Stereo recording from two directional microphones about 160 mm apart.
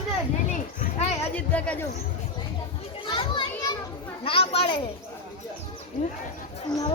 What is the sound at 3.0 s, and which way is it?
Children playing, 30° left (ahead or behind).